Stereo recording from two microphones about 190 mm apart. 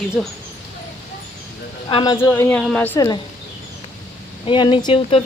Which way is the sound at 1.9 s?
30° left (ahead or behind).